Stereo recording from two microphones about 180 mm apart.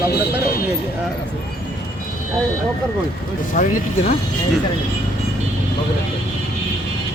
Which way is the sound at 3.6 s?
45° left (ahead or behind).